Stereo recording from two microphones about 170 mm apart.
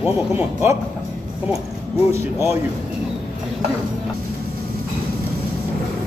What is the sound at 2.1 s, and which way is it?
Speech, 15° right (ahead or behind).